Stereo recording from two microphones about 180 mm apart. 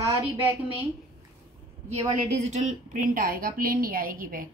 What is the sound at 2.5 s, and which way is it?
A woman's voice, 40° right (ahead or behind).